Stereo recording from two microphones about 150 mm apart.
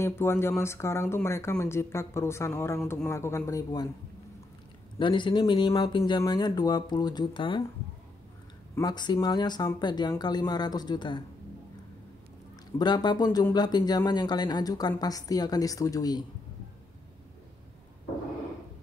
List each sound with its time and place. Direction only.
0.0 s speech: 15° left (ahead or behind)
4.9 s speech: 30° left (ahead or behind)
8.7 s speech: 25° left (ahead or behind)
12.7 s speech: 30° left (ahead or behind)